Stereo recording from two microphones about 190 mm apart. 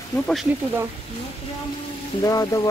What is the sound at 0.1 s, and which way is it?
Speech, centre (ahead or behind).